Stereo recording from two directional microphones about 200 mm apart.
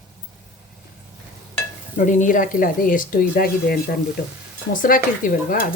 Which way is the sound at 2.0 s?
40° left (ahead or behind).